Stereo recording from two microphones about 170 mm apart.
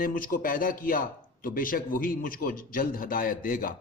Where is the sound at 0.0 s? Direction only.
55° left (ahead or behind).